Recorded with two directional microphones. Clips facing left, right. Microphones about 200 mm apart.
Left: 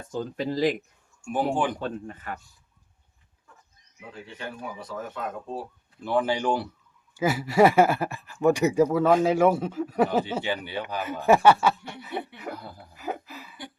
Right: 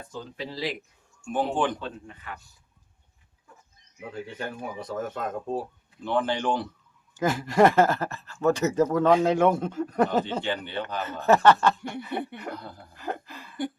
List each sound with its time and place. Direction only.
0.0 s speech: 45° left (ahead or behind)
1.3 s speech: 10° left (ahead or behind)
1.8 s speech: 45° left (ahead or behind)
4.1 s speech: 45° right (ahead or behind)
6.1 s speech: 10° left (ahead or behind)